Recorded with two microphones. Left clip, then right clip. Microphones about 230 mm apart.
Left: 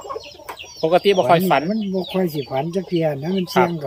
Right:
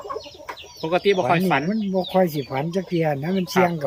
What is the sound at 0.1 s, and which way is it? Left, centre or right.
Chicken, left.